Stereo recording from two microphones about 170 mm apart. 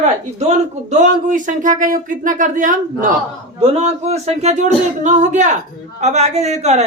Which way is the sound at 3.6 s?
40° right (ahead or behind).